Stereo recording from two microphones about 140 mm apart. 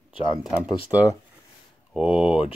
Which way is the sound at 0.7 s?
25° left (ahead or behind).